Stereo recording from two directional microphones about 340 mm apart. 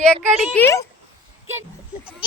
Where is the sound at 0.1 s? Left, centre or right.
Centre.